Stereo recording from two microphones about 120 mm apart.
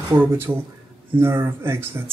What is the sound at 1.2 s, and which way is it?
Speech, 20° right (ahead or behind).